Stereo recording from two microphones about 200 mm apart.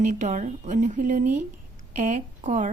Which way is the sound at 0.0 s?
40° right (ahead or behind).